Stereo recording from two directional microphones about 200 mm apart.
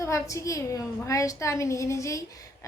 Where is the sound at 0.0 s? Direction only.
15° left (ahead or behind).